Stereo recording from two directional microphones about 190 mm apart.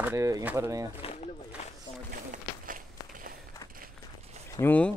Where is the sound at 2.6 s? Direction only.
45° right (ahead or behind).